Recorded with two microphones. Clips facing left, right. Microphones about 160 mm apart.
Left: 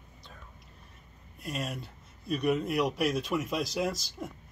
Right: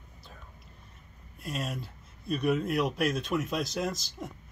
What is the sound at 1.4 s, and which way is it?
Speech, centre (ahead or behind).